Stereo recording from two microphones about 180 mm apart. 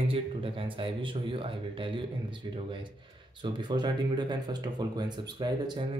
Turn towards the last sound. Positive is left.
turn(degrees=-25)  # may be behind; listen again after turning